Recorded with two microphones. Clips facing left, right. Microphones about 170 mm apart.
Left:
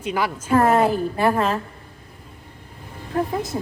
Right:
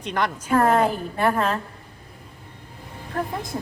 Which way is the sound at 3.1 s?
10° left (ahead or behind).